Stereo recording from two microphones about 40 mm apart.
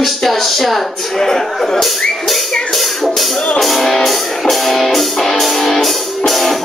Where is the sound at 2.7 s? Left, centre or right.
Centre.